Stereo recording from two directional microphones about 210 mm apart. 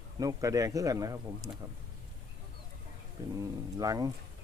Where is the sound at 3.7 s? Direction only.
15° right (ahead or behind).